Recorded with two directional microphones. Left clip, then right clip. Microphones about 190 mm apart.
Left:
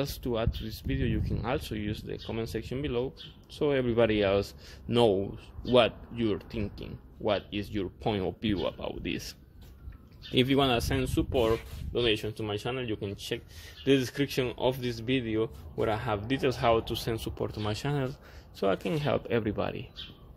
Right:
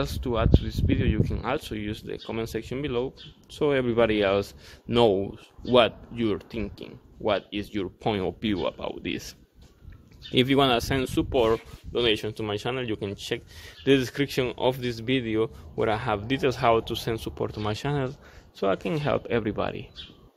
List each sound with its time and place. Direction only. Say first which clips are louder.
0.0 s speech: right 4 dB; 5° right (ahead or behind)
10.3 s speech: right 4 dB; 15° right (ahead or behind)